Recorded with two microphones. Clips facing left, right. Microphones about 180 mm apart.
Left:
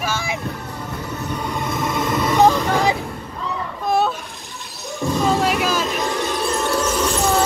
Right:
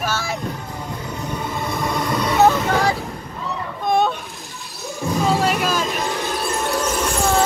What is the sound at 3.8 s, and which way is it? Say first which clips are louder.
Boat: right 1 dB; 5° left (ahead or behind).